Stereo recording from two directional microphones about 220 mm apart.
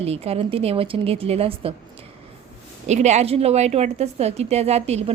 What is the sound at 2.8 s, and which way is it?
A woman's voice, 30° right (ahead or behind).